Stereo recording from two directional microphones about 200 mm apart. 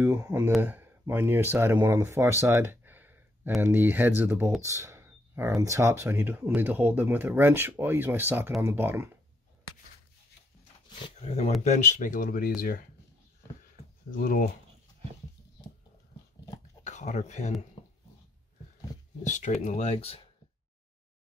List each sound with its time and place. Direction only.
0.0 s speech: 10° right (ahead or behind)
11.1 s speech: 30° left (ahead or behind)
14.1 s speech: 45° left (ahead or behind)
16.8 s speech: 35° left (ahead or behind)
19.2 s speech: 40° left (ahead or behind)